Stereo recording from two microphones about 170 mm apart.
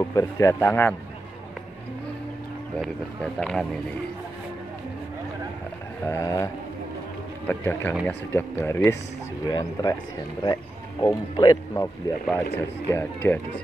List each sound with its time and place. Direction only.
0.0 s a man's voice: 20° left (ahead or behind)
2.8 s speech: 5° left (ahead or behind)
6.0 s a man's voice: 15° left (ahead or behind)